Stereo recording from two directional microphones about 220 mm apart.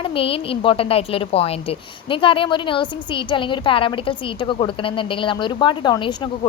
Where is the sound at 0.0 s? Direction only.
25° left (ahead or behind).